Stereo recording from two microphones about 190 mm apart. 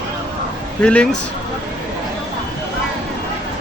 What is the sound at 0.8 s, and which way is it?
Speech, 5° left (ahead or behind).